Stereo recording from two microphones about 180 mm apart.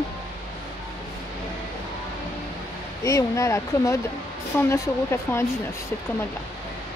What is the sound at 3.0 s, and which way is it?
Speech, 15° left (ahead or behind).